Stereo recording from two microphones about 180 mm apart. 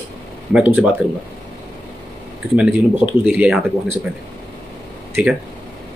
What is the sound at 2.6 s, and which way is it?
Speech, 5° right (ahead or behind).